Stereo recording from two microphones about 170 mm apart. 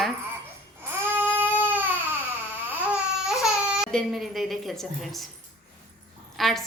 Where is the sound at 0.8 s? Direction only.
15° right (ahead or behind).